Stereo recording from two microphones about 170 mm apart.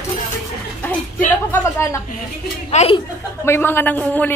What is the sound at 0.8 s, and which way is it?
A woman's voice, 10° left (ahead or behind).